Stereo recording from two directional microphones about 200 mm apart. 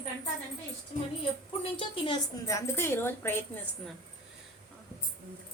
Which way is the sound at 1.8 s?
25° left (ahead or behind).